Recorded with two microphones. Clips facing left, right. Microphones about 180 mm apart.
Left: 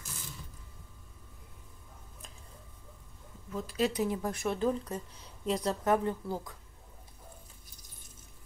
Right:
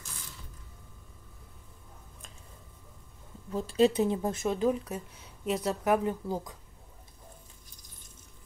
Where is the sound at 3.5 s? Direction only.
30° right (ahead or behind).